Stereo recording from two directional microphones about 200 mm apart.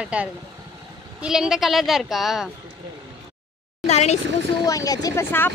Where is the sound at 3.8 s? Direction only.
35° left (ahead or behind).